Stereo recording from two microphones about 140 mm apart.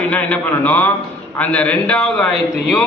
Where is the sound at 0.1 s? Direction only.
10° left (ahead or behind).